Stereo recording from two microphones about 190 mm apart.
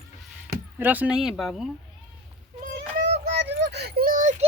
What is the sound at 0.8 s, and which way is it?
Speech, 10° right (ahead or behind).